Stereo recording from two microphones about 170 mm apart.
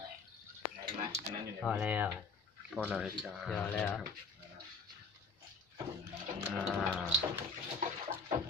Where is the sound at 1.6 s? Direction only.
5° right (ahead or behind).